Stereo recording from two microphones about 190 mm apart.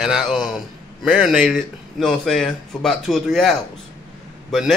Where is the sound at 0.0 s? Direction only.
Centre (ahead or behind).